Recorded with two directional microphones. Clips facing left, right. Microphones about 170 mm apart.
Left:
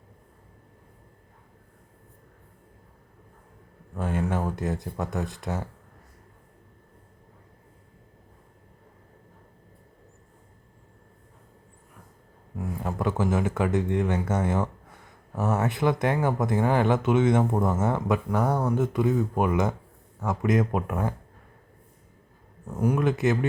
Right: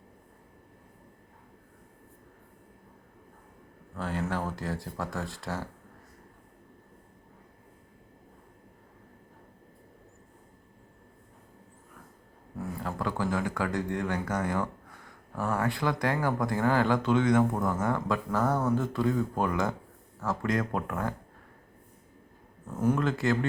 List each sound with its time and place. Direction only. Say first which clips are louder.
3.9 s speech: left 4 dB; 20° left (ahead or behind)
12.5 s speech: left 4 dB; 20° left (ahead or behind)
22.6 s speech: left 2 dB; 15° left (ahead or behind)